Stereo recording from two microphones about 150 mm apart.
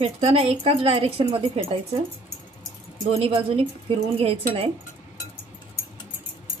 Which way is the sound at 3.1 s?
40° right (ahead or behind).